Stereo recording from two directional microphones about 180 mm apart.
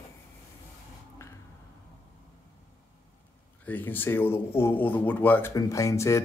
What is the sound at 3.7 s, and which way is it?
Speech, 10° left (ahead or behind).